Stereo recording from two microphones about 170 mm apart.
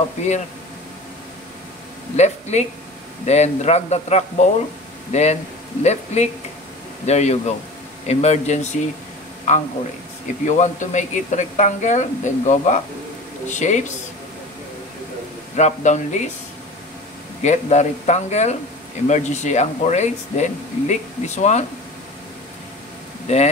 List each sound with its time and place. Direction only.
2.1 s a man's voice: 40° left (ahead or behind)
15.5 s speech: 45° left (ahead or behind)
17.4 s speech: 45° left (ahead or behind)
23.2 s speech: 40° left (ahead or behind)